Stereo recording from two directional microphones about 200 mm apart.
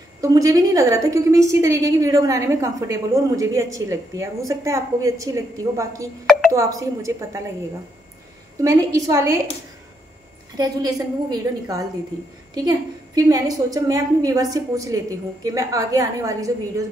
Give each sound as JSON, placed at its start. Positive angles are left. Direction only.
{"t": 0.2, "sound": "a woman's voice", "side_deg": -15}
{"t": 8.6, "sound": "a woman's voice", "side_deg": -15}
{"t": 10.6, "sound": "a woman's voice", "side_deg": -20}